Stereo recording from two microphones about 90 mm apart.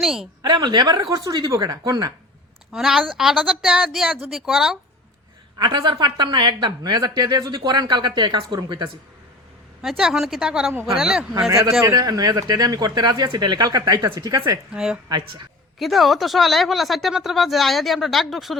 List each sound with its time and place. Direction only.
0.0 s speech: 5° right (ahead or behind)
0.4 s speech: 55° right (ahead or behind)
2.7 s speech: 5° right (ahead or behind)
5.5 s speech: 60° right (ahead or behind)
9.8 s speech: 5° right (ahead or behind)
11.9 s speech: 45° right (ahead or behind)
14.7 s speech: 10° right (ahead or behind)